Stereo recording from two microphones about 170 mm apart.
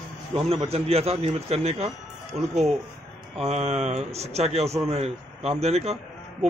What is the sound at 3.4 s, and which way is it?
A man's voice, 40° right (ahead or behind).